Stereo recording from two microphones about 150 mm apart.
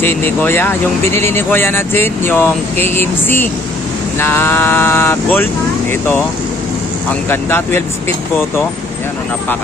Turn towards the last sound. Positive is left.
turn(degrees=15)  # may be behind; listen again after turning